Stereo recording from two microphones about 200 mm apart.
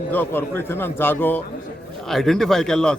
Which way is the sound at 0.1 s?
10° left (ahead or behind).